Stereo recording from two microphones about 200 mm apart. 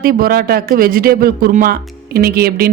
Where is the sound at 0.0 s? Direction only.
50° right (ahead or behind).